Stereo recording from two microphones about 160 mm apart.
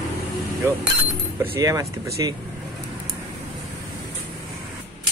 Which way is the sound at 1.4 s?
15° right (ahead or behind).